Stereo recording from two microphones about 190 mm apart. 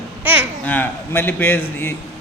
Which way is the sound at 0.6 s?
10° left (ahead or behind).